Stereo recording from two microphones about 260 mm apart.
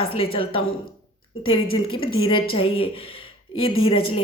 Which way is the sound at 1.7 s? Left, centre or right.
Left.